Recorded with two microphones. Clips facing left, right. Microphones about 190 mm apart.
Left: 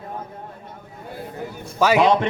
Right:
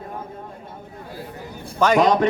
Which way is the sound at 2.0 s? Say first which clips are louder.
Even; 40° right (ahead or behind).